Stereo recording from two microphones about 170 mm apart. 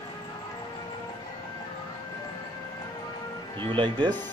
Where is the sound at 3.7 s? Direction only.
25° right (ahead or behind).